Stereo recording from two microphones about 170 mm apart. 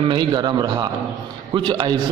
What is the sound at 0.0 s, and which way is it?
A man's voice, 30° right (ahead or behind).